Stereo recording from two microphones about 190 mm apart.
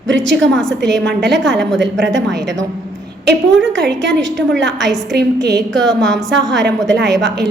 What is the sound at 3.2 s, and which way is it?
Speech, 70° right (ahead or behind).